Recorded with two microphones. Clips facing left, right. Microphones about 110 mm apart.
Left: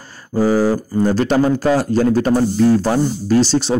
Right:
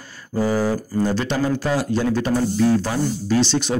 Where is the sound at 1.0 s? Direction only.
45° left (ahead or behind).